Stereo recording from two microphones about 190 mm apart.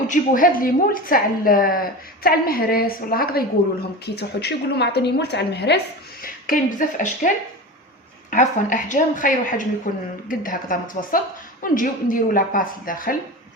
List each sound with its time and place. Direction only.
0.1 s a woman's voice: 45° left (ahead or behind)
6.2 s a woman's voice: 45° left (ahead or behind)
8.3 s a woman's voice: 40° left (ahead or behind)